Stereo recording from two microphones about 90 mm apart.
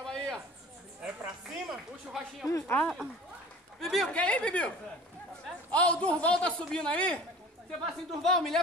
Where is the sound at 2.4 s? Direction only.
30° left (ahead or behind).